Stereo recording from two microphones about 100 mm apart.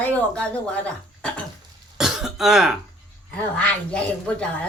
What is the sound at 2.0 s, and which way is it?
Throat clearing, 5° right (ahead or behind).